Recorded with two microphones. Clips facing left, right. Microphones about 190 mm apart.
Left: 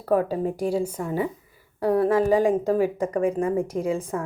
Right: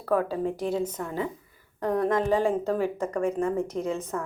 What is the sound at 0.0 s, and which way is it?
Speech, 40° left (ahead or behind).